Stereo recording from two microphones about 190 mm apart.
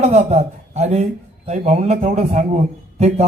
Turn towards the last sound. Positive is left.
turn(degrees=-35)  # may be behind; listen again after turning